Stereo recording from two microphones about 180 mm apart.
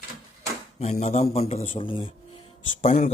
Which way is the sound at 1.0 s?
35° left (ahead or behind).